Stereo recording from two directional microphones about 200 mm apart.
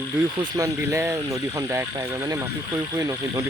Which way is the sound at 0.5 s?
15° right (ahead or behind).